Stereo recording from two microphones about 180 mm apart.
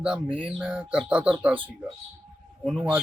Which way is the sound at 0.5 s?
10° right (ahead or behind).